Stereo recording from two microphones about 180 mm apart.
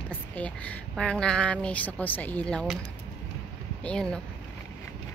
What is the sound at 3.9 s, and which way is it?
Speech, 5° left (ahead or behind).